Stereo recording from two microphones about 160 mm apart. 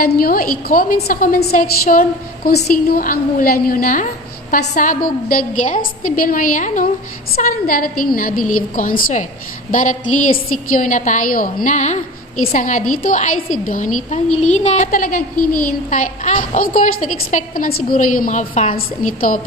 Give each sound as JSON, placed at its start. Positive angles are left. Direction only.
{"t": 0.0, "sound": "a woman's voice", "side_deg": 65}